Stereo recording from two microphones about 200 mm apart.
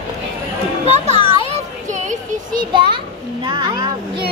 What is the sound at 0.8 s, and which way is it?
Children playing, 35° right (ahead or behind).